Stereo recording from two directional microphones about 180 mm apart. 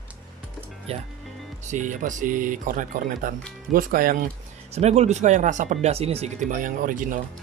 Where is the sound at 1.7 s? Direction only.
45° right (ahead or behind).